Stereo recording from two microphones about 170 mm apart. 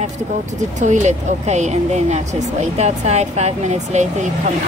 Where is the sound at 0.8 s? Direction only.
45° right (ahead or behind).